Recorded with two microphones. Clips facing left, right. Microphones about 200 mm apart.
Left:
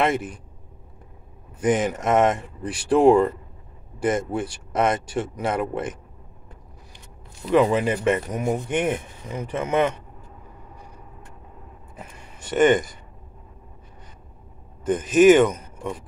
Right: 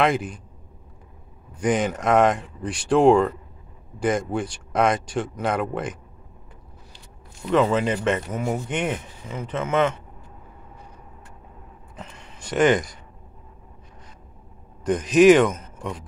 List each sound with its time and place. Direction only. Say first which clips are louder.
0.0 s speech: right 1 dB; centre (ahead or behind)
1.6 s speech: left 1 dB; centre (ahead or behind)
7.5 s speech: left 1 dB; 10° left (ahead or behind)
12.0 s speech: right 1 dB; 10° left (ahead or behind)
14.9 s speech: even; 5° left (ahead or behind)